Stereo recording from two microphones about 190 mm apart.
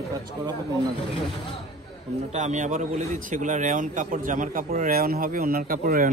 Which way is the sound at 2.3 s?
40° right (ahead or behind).